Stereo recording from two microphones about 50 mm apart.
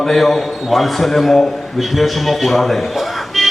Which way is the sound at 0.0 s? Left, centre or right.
Centre.